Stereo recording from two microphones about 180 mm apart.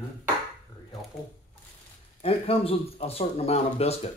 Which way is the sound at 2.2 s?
30° left (ahead or behind).